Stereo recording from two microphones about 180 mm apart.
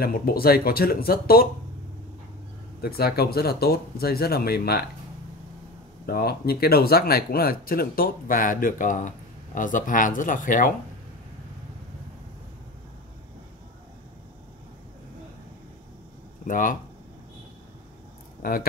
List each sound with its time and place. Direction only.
0.0 s speech: 55° left (ahead or behind)
2.8 s speech: 60° left (ahead or behind)
6.0 s speech: 60° left (ahead or behind)
16.4 s speech: 50° left (ahead or behind)
18.4 s speech: 55° left (ahead or behind)